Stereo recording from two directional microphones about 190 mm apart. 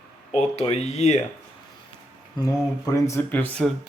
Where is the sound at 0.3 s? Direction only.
35° left (ahead or behind).